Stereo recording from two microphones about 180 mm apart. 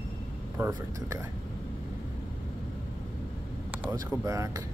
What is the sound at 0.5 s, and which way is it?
Speech, 10° right (ahead or behind).